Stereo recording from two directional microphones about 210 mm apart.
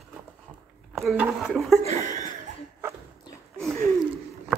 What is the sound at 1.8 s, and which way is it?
Chuckle, 35° right (ahead or behind).